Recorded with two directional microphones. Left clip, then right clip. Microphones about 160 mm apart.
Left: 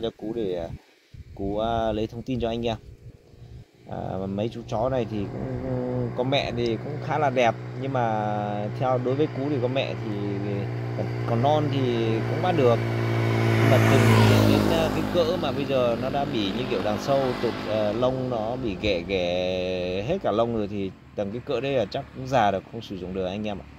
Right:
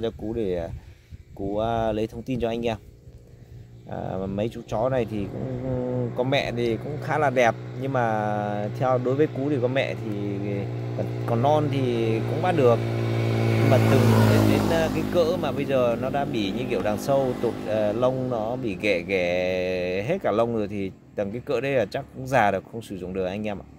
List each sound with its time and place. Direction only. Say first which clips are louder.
0.0 s speech: right 1 dB; 5° right (ahead or behind)
3.9 s speech: right 1 dB; 10° right (ahead or behind); by 13.9 s 10° left (ahead or behind)
14.3 s speech: even; 70° left (ahead or behind)
15.1 s speech: right 2 dB; 10° right (ahead or behind)
17.2 s speech: right 1 dB; 20° left (ahead or behind)
17.7 s speech: right 1 dB; 5° right (ahead or behind)